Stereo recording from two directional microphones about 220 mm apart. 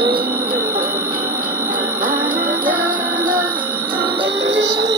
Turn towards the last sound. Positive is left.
turn(degrees=-55)  # may be behind; listen again after turning